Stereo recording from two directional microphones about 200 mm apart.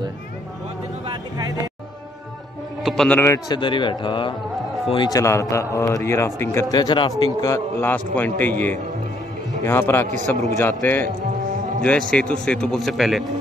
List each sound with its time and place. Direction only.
1.1 s speech: 20° right (ahead or behind)
2.8 s a man's voice: centre (ahead or behind)
10.0 s a man's voice: 35° right (ahead or behind)
10.6 s a man's voice: 10° left (ahead or behind)
12.1 s speech: 5° left (ahead or behind)